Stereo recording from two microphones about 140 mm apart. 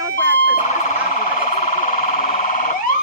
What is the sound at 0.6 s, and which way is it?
Siren, 75° left (ahead or behind).